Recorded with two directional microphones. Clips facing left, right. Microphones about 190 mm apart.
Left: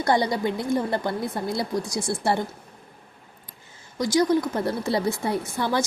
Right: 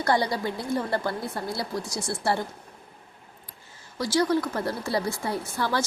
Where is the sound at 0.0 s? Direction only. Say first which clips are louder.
Left 3 dB; 20° left (ahead or behind).